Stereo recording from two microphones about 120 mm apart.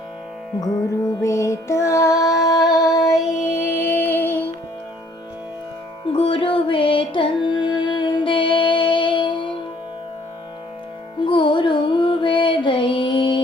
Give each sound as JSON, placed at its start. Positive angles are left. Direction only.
{"t": 1.2, "sound": "music", "side_deg": 25}
{"t": 6.1, "sound": "music", "side_deg": 50}
{"t": 11.2, "sound": "music", "side_deg": 45}